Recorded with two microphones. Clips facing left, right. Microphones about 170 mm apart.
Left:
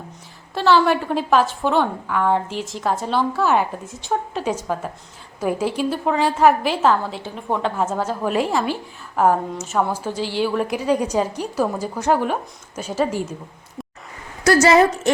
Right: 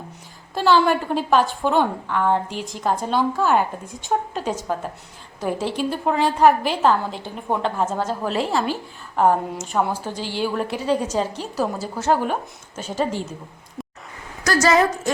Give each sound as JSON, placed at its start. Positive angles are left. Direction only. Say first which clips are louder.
{"t": 0.5, "sound": "a woman's voice", "louder": "left 1 dB", "side_deg": 0}
{"t": 10.7, "sound": "a woman's voice", "louder": "left 2 dB", "side_deg": 10}
{"t": 13.8, "sound": "a sound", "louder": "even", "side_deg": 0}
{"t": 14.4, "sound": "a woman's voice", "louder": "left 4 dB", "side_deg": 25}